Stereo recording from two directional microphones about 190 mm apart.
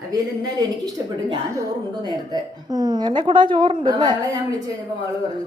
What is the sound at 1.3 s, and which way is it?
A woman's voice, 20° right (ahead or behind).